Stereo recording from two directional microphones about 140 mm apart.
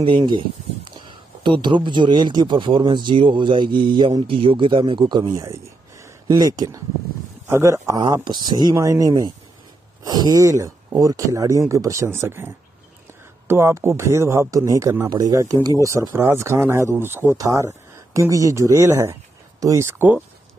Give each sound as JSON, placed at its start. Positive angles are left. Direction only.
{"t": 0.0, "sound": "a man's voice", "side_deg": -35}
{"t": 8.0, "sound": "a man's voice", "side_deg": -35}